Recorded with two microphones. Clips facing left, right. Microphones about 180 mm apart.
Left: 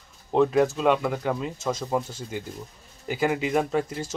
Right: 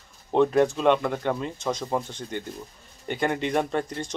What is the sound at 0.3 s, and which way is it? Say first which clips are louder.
Speech: even; centre (ahead or behind).